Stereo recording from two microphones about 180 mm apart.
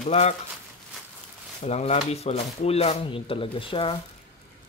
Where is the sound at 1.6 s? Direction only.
35° left (ahead or behind).